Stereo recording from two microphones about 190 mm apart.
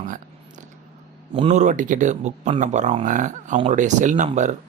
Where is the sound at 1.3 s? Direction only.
35° right (ahead or behind).